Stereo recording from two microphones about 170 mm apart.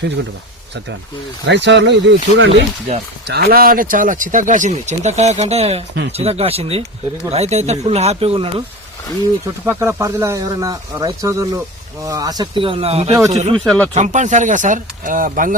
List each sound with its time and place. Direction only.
1.5 s speech: 90° right
3.2 s speech: 65° right (ahead or behind); by 8.6 s 35° right (ahead or behind)
9.6 s speech: 15° right (ahead or behind); by 13.6 s 40° right (ahead or behind)
13.7 s speech: 5° left (ahead or behind)
13.9 s speech: 45° right (ahead or behind)